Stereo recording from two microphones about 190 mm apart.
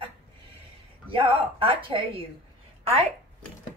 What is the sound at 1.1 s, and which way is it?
A child's voice, 25° right (ahead or behind).